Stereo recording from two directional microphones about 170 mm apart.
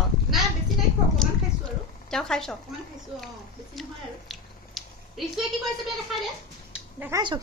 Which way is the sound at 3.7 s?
Centre (ahead or behind).